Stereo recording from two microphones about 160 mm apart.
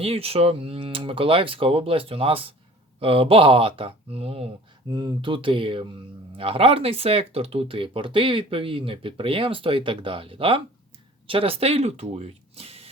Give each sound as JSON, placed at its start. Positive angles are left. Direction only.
{"t": 0.0, "sound": "speech", "side_deg": -40}
{"t": 4.9, "sound": "speech", "side_deg": -25}